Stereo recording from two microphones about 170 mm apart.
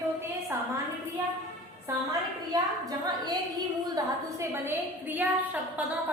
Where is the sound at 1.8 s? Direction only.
20° right (ahead or behind).